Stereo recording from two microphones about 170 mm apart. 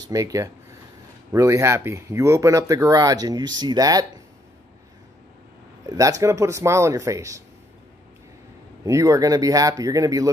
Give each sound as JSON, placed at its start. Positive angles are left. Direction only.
{"t": 0.1, "sound": "speech", "side_deg": -20}
{"t": 5.9, "sound": "speech", "side_deg": -20}
{"t": 8.8, "sound": "speech", "side_deg": -20}